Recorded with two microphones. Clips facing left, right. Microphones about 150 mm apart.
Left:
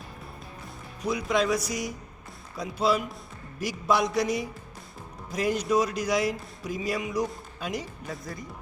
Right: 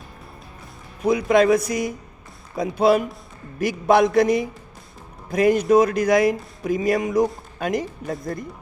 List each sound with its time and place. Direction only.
1.0 s speech: 55° right (ahead or behind)